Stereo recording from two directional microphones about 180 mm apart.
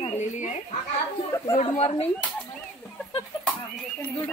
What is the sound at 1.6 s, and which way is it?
Speech, 35° left (ahead or behind).